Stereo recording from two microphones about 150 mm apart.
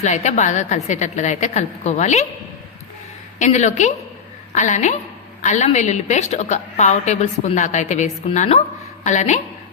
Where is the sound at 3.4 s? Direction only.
50° left (ahead or behind).